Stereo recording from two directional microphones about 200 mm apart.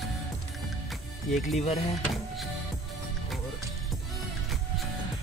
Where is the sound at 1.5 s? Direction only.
35° left (ahead or behind).